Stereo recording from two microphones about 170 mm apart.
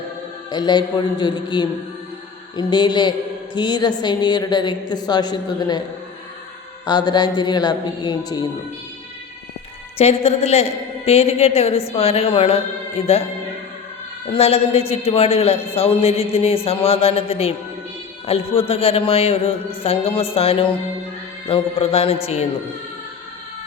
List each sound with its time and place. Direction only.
0.5 s a woman's voice: 25° left (ahead or behind)
6.8 s a woman's voice: 25° left (ahead or behind)
10.0 s a woman's voice: 40° left (ahead or behind)
14.3 s a woman's voice: 35° left (ahead or behind)